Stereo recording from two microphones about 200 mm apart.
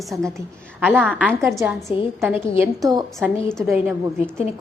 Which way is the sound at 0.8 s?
10° right (ahead or behind).